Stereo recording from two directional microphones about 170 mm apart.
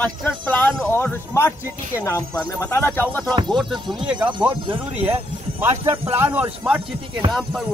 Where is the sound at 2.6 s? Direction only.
15° left (ahead or behind).